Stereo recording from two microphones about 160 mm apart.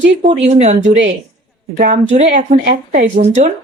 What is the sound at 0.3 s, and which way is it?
Speech, 45° right (ahead or behind).